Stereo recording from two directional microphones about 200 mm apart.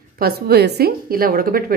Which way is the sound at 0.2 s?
50° right (ahead or behind).